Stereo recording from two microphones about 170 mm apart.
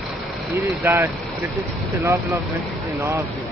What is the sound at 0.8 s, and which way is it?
A man's voice, 10° right (ahead or behind).